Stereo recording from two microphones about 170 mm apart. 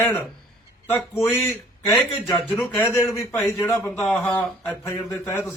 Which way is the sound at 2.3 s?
Centre (ahead or behind).